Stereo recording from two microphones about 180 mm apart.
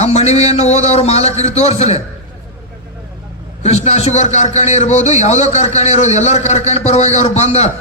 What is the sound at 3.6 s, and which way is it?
A man's voice, 35° left (ahead or behind).